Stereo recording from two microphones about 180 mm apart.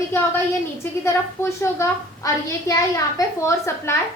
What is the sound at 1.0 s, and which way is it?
A woman's voice, 15° left (ahead or behind).